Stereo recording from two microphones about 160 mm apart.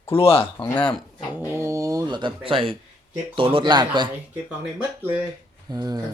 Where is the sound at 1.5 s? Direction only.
20° right (ahead or behind).